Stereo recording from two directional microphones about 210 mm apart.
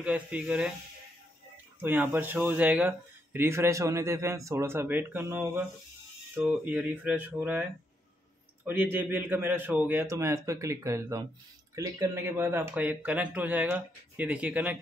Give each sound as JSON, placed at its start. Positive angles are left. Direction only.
{"t": 0.0, "sound": "speech", "side_deg": -5}
{"t": 1.8, "sound": "speech", "side_deg": -10}
{"t": 8.6, "sound": "speech", "side_deg": -10}